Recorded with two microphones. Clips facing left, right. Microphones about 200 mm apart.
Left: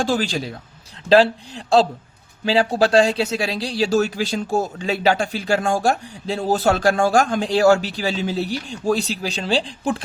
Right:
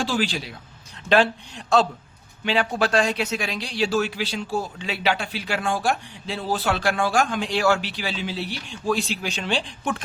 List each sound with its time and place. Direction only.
0.0 s speech: 45° left (ahead or behind)
1.1 s speech: 30° left (ahead or behind)